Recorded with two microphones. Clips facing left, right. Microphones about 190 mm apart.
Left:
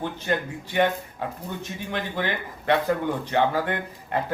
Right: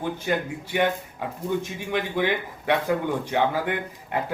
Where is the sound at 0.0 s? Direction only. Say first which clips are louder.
Right 1 dB; 10° right (ahead or behind).